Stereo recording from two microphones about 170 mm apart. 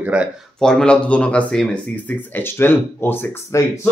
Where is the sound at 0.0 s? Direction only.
5° right (ahead or behind).